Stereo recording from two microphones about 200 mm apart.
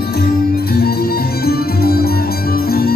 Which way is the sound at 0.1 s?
50° left (ahead or behind).